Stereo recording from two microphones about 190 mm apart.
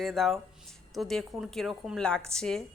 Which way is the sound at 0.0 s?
Centre (ahead or behind).